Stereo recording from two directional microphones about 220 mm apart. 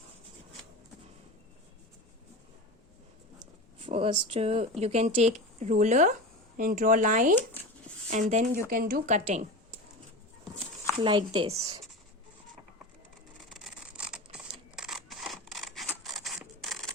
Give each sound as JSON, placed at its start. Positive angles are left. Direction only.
{"t": 3.3, "sound": "a sound", "side_deg": -25}
{"t": 4.8, "sound": "speech", "side_deg": -30}
{"t": 11.0, "sound": "speech", "side_deg": -25}
{"t": 13.5, "sound": "camera", "side_deg": 0}